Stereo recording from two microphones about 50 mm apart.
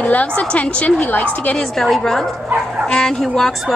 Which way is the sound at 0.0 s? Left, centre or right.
Left.